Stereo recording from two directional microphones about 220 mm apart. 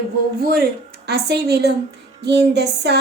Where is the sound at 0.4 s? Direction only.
45° right (ahead or behind).